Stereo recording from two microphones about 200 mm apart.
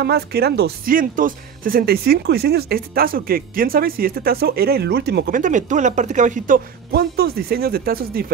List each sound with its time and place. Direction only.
0.0 s speech: 55° right (ahead or behind)